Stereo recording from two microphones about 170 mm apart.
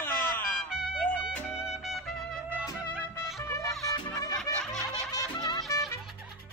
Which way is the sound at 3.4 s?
15° left (ahead or behind).